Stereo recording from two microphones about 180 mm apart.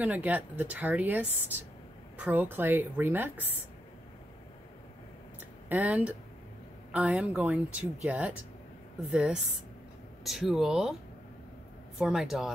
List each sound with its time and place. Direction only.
0.0 s speech: 10° right (ahead or behind)
5.7 s speech: 10° right (ahead or behind)
12.0 s speech: centre (ahead or behind)